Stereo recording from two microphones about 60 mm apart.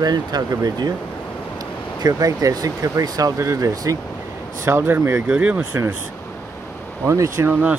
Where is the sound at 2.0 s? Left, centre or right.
Right.